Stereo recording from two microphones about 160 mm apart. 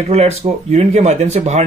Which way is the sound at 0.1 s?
40° right (ahead or behind).